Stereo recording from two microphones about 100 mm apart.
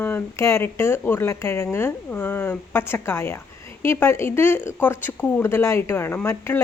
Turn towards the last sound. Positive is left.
turn(degrees=25)  # may be behind; listen again after turning